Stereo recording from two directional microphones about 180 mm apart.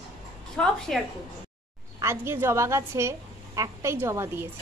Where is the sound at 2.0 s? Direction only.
15° right (ahead or behind).